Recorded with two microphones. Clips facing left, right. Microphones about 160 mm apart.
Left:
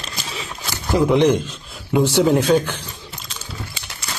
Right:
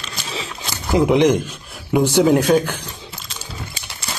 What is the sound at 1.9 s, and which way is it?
Speech, 15° right (ahead or behind).